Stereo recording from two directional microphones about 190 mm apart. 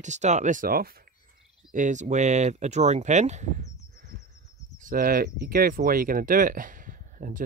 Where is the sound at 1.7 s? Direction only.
40° right (ahead or behind).